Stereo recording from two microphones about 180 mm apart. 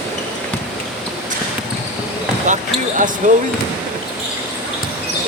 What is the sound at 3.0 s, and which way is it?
Speech, 45° right (ahead or behind).